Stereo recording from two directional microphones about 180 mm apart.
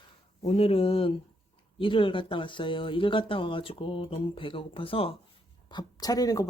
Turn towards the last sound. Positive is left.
turn(degrees=20)  # may be behind; listen again after turning